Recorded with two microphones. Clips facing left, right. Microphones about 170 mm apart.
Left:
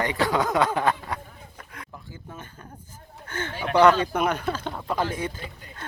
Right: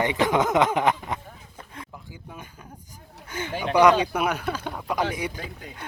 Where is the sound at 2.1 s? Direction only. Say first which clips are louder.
Left 1 dB; 10° right (ahead or behind).